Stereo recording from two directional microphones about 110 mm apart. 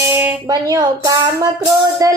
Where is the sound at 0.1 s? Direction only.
20° right (ahead or behind).